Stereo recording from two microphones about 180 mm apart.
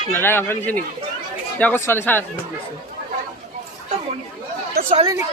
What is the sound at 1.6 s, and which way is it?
Speech, 10° left (ahead or behind).